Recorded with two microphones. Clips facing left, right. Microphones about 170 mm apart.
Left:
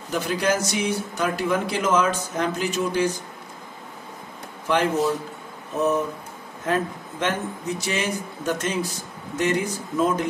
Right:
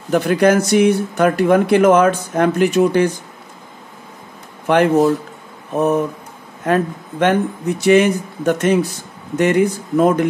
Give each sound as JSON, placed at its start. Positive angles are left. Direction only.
{"t": 0.1, "sound": "speech", "side_deg": -60}
{"t": 4.6, "sound": "speech", "side_deg": -60}
{"t": 6.6, "sound": "speech", "side_deg": -60}